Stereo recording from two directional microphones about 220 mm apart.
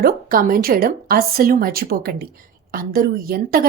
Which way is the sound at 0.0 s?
40° right (ahead or behind).